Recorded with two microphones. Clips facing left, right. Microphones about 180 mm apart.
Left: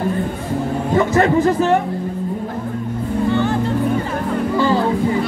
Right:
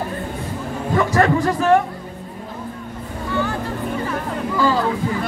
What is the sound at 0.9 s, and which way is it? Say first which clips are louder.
Speech: left 2 dB; 25° left (ahead or behind).